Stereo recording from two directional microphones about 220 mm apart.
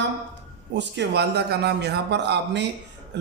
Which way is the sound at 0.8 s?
50° right (ahead or behind).